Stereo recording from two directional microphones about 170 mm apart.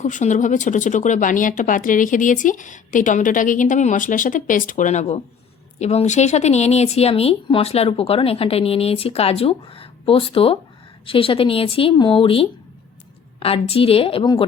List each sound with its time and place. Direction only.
0.0 s speech: 45° left (ahead or behind); by 14.4 s 30° left (ahead or behind)